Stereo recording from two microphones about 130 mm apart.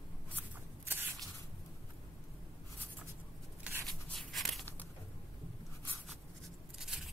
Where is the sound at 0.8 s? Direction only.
15° right (ahead or behind).